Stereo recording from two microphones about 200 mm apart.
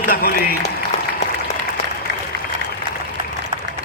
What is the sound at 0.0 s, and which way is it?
Speech, 45° left (ahead or behind).